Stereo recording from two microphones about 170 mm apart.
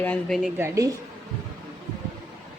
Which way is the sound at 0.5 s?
15° right (ahead or behind).